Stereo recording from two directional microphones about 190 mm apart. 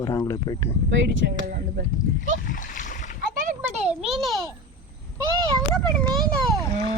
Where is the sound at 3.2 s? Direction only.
45° right (ahead or behind).